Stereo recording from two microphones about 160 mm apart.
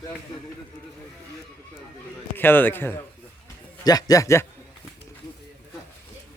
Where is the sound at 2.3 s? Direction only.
10° left (ahead or behind).